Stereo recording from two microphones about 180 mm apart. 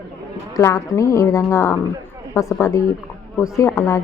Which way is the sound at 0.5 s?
15° left (ahead or behind).